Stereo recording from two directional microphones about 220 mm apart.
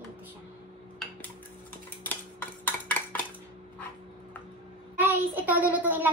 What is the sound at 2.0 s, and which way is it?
Cutlery, 10° left (ahead or behind).